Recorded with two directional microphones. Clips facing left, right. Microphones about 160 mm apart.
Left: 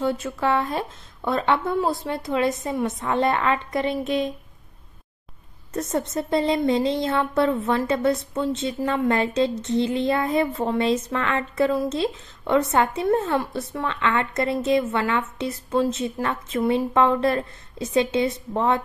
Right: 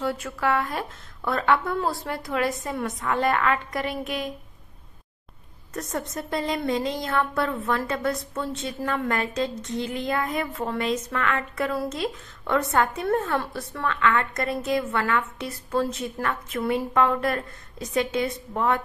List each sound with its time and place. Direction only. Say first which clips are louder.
0.0 s a woman's voice: left 3 dB; 20° left (ahead or behind)
5.8 s a woman's voice: left 6 dB; 25° left (ahead or behind)